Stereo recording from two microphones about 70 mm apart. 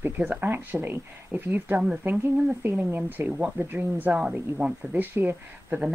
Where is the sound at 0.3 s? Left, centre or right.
Right.